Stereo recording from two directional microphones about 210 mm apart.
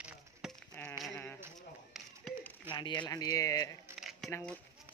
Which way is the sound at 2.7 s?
20° left (ahead or behind).